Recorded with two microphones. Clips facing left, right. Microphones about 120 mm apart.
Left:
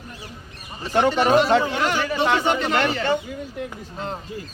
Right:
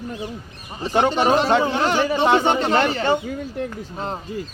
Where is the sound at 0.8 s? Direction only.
20° right (ahead or behind).